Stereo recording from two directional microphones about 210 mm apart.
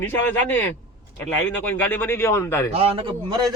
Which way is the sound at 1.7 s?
10° left (ahead or behind).